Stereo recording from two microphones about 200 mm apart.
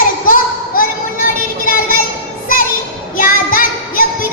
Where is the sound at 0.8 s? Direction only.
45° left (ahead or behind).